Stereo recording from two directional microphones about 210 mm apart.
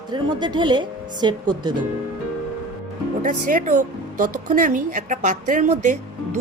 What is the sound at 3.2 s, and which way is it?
Speech, 40° right (ahead or behind).